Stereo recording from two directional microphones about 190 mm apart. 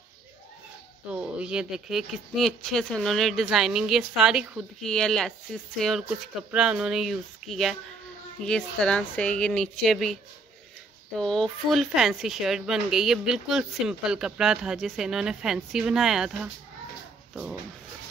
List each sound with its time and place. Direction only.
1.1 s speech: 5° right (ahead or behind)
11.1 s speech: 5° left (ahead or behind)